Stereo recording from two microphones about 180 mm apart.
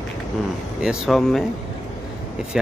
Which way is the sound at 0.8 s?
5° right (ahead or behind).